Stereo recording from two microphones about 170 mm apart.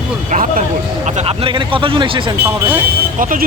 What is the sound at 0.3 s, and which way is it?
Speech, 45° right (ahead or behind).